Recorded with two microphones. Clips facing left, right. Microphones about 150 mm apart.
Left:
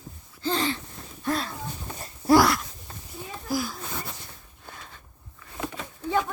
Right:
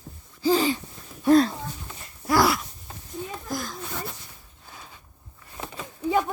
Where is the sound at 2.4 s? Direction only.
Centre (ahead or behind).